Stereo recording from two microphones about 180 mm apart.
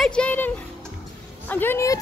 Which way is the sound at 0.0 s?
5° left (ahead or behind).